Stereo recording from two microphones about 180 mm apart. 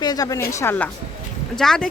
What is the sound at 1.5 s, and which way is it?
Speech, 5° left (ahead or behind).